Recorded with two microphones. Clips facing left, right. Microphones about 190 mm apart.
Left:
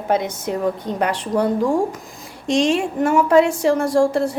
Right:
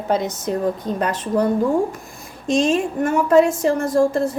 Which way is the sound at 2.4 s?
75° left (ahead or behind).